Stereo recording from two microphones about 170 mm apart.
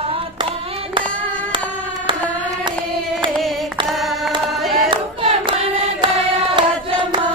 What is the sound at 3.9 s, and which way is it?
Singing, centre (ahead or behind).